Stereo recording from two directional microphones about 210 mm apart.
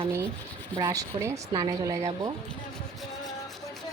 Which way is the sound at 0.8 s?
15° right (ahead or behind).